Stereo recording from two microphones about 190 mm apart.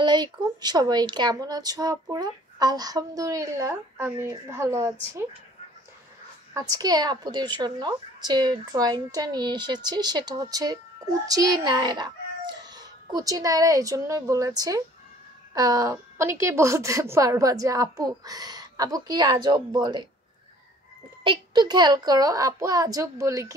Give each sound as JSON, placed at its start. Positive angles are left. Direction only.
{"t": 0.0, "sound": "speech", "side_deg": -20}
{"t": 6.5, "sound": "speech", "side_deg": -20}
{"t": 21.2, "sound": "speech", "side_deg": -25}